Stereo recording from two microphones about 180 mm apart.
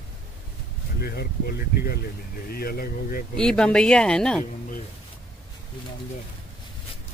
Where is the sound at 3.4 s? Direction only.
5° left (ahead or behind).